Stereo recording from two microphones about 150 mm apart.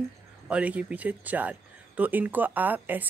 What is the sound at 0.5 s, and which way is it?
Speech, 10° right (ahead or behind).